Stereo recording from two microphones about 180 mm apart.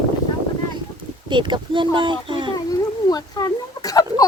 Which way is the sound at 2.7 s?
20° left (ahead or behind).